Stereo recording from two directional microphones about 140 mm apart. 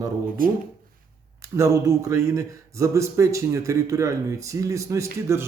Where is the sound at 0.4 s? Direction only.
90° right.